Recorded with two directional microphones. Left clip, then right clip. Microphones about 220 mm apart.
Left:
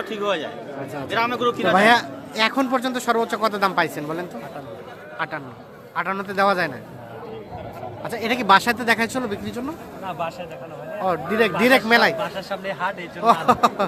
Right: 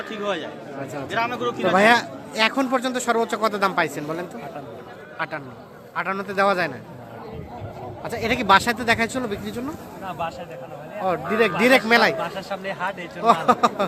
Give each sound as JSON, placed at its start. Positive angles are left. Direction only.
{"t": 0.1, "sound": "a man's voice", "side_deg": 20}
{"t": 1.1, "sound": "speech", "side_deg": 35}
{"t": 1.7, "sound": "a man's voice", "side_deg": 0}
{"t": 8.0, "sound": "speech", "side_deg": 0}